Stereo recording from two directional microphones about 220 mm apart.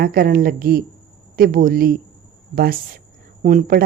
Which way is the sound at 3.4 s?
40° right (ahead or behind).